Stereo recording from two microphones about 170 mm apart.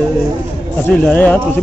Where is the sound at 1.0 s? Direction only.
10° left (ahead or behind).